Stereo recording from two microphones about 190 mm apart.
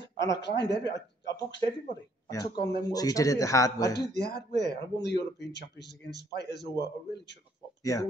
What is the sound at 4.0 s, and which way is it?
Speech, 60° left (ahead or behind).